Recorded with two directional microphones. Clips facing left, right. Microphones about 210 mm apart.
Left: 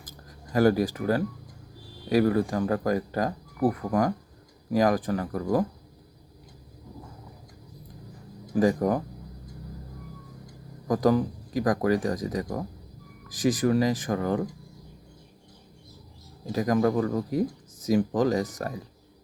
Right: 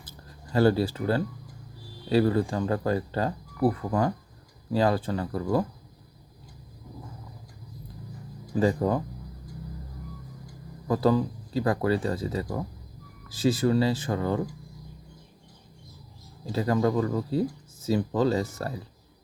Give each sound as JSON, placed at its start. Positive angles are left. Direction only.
{"t": 0.0, "sound": "a sound", "side_deg": 10}
{"t": 2.0, "sound": "speech", "side_deg": 15}
{"t": 8.5, "sound": "speech", "side_deg": 15}
{"t": 10.8, "sound": "speech", "side_deg": 15}
{"t": 16.5, "sound": "speech", "side_deg": 15}